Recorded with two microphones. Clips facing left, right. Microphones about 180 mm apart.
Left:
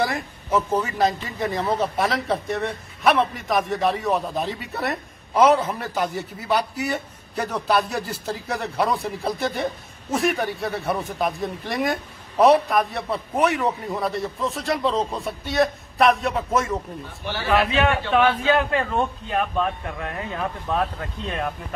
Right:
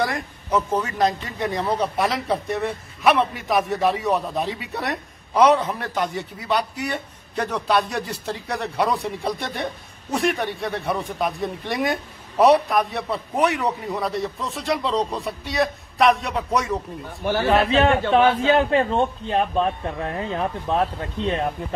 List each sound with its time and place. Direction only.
0.0 s a man's voice: 5° left (ahead or behind)
17.2 s a man's voice: 50° right (ahead or behind)
17.5 s a man's voice: 30° right (ahead or behind)